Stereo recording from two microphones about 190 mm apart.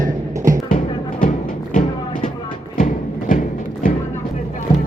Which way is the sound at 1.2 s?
40° left (ahead or behind).